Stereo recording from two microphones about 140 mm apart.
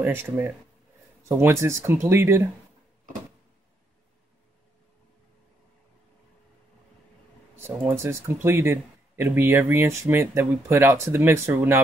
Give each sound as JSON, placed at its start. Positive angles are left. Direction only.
{"t": 0.0, "sound": "speech", "side_deg": -15}
{"t": 7.5, "sound": "speech", "side_deg": -15}